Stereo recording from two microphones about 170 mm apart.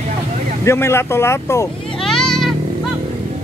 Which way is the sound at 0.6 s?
15° left (ahead or behind).